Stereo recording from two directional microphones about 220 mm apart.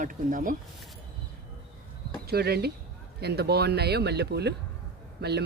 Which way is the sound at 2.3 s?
45° right (ahead or behind).